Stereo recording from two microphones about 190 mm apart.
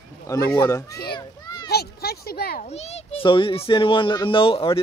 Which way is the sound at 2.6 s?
35° left (ahead or behind).